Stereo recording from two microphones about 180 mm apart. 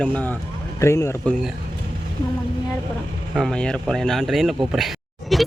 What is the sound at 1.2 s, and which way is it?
Speech, 5° left (ahead or behind).